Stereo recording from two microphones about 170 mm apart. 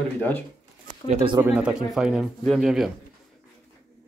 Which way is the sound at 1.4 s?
10° right (ahead or behind).